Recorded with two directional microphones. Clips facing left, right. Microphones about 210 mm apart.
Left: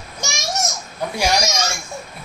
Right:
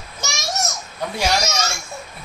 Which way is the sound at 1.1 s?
15° left (ahead or behind).